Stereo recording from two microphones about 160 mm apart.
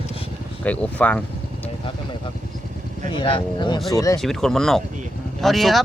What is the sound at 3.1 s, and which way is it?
Speech, 30° left (ahead or behind).